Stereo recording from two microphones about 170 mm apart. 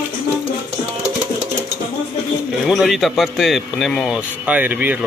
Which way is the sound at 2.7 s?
Centre (ahead or behind).